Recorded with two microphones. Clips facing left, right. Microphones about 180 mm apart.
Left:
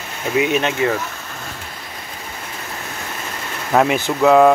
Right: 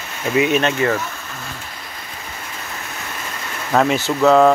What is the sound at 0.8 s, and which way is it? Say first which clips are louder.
Speech: even; 15° left (ahead or behind).